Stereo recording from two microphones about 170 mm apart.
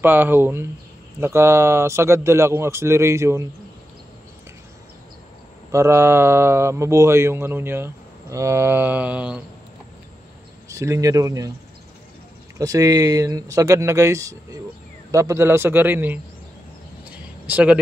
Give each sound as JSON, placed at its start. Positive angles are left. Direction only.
{"t": 0.0, "sound": "speech", "side_deg": -10}
{"t": 5.7, "sound": "speech", "side_deg": -15}
{"t": 10.7, "sound": "speech", "side_deg": -20}
{"t": 12.5, "sound": "speech", "side_deg": -20}
{"t": 17.5, "sound": "speech", "side_deg": -10}